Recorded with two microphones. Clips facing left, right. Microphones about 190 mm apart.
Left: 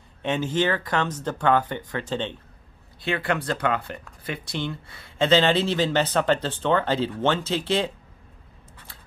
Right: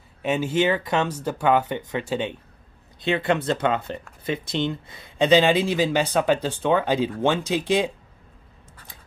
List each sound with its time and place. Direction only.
0.2 s speech: 10° right (ahead or behind)